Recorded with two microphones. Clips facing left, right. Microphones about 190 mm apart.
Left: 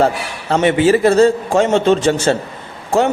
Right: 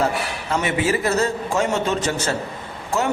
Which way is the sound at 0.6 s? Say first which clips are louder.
Left 10 dB; 30° left (ahead or behind).